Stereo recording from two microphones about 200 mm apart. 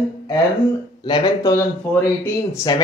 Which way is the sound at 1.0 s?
20° left (ahead or behind).